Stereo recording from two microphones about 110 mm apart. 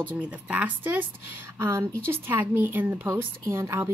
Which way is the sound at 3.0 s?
30° right (ahead or behind).